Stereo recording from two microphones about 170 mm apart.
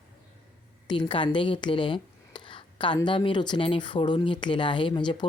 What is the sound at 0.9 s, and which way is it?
A woman's voice, 30° left (ahead or behind).